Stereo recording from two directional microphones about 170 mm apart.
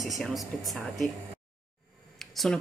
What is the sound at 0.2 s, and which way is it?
Speech, centre (ahead or behind).